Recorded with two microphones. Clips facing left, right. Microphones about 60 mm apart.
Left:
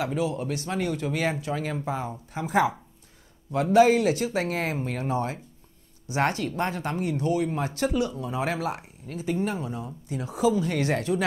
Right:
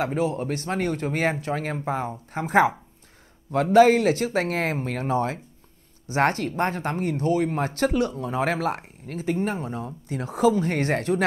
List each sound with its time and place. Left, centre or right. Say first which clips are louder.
0.0 s speech: right 3 dB; right
3.7 s speech: right 3 dB; right